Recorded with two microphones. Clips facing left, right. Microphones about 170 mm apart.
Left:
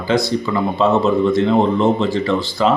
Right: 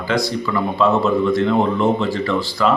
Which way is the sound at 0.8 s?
25° left (ahead or behind).